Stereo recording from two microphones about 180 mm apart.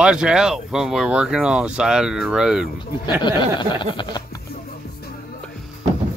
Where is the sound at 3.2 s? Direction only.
25° left (ahead or behind).